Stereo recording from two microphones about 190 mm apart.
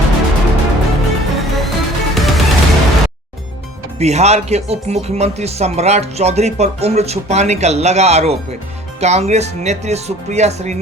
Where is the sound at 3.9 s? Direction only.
35° right (ahead or behind).